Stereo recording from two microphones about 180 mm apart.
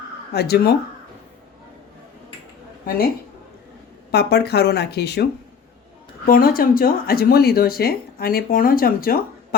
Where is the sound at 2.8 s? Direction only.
55° left (ahead or behind).